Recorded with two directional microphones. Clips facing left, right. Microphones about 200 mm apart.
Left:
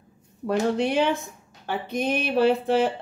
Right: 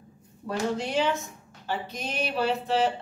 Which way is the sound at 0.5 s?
60° left (ahead or behind).